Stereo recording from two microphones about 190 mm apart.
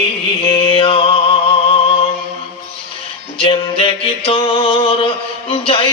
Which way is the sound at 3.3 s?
30° left (ahead or behind).